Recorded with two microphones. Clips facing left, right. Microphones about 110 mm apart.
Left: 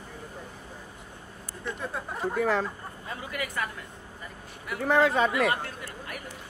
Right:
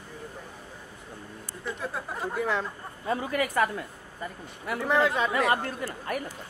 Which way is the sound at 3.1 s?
40° right (ahead or behind).